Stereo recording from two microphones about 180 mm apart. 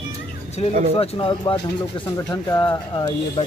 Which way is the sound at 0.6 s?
35° left (ahead or behind).